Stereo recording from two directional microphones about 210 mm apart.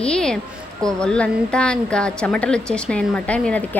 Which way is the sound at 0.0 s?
5° left (ahead or behind).